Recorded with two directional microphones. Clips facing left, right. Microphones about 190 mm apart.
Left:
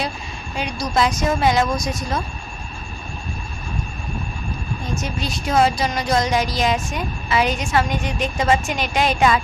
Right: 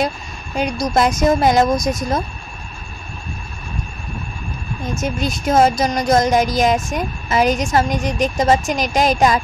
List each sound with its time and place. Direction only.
0.6 s speech: 45° right (ahead or behind)
5.0 s speech: 45° right (ahead or behind)